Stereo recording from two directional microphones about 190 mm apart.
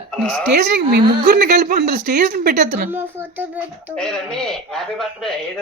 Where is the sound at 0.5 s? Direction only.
55° right (ahead or behind).